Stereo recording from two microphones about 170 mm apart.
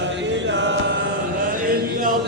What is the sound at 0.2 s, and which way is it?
Chant, 90° right.